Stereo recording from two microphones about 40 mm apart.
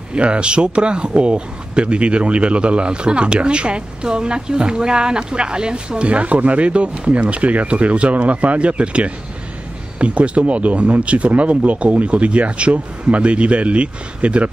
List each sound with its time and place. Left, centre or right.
0.1 s speech: right
6.0 s speech: right